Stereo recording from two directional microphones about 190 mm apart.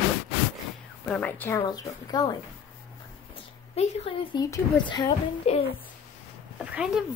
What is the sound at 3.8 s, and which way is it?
Speech, 35° left (ahead or behind).